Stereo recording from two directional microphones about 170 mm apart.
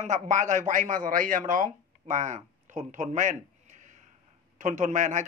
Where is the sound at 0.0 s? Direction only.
45° right (ahead or behind).